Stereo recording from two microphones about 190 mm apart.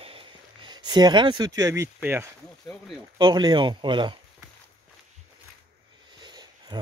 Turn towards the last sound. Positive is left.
turn(degrees=-20)  # may be behind; listen again after turning